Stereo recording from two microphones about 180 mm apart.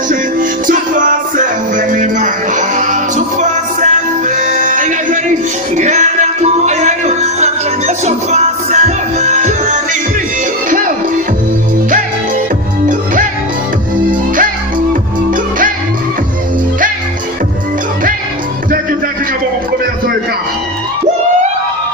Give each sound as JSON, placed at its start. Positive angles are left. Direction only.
{"t": 0.7, "sound": "music", "side_deg": -45}
{"t": 12.8, "sound": "music", "side_deg": -50}
{"t": 15.3, "sound": "music", "side_deg": -50}